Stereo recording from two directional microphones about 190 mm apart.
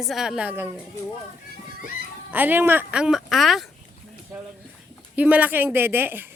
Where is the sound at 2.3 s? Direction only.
10° right (ahead or behind).